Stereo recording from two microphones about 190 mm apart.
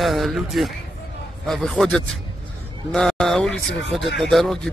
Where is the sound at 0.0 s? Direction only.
Centre (ahead or behind).